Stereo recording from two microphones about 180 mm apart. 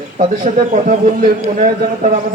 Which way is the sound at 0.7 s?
40° right (ahead or behind).